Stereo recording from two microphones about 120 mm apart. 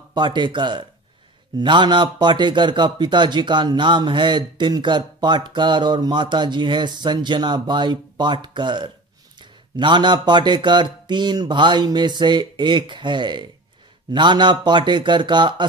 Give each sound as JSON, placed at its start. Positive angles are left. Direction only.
{"t": 0.1, "sound": "a man's voice", "side_deg": -40}